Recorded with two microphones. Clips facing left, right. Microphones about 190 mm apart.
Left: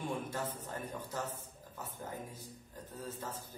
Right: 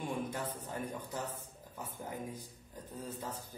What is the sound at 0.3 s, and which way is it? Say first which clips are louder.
A man's voice: even; 15° right (ahead or behind).